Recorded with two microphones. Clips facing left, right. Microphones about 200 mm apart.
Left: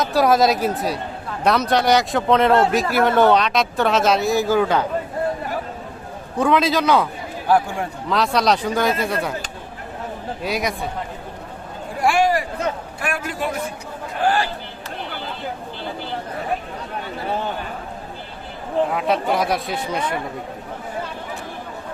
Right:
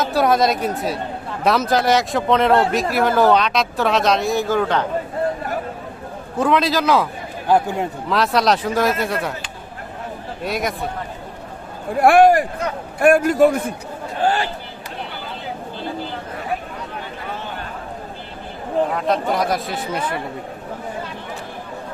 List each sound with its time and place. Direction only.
0.0 s speech: centre (ahead or behind)
6.4 s speech: centre (ahead or behind)
7.4 s speech: 20° right (ahead or behind)
8.1 s speech: centre (ahead or behind)
10.4 s speech: centre (ahead or behind)
11.9 s a man's voice: 55° right (ahead or behind)
14.3 s speech: 25° right (ahead or behind)
18.9 s speech: 5° left (ahead or behind)